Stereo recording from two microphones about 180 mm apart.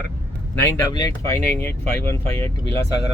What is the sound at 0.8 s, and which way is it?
Speech, 20° left (ahead or behind).